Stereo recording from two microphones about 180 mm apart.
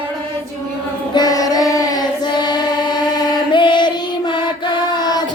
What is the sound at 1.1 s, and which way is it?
Child singing, 20° left (ahead or behind).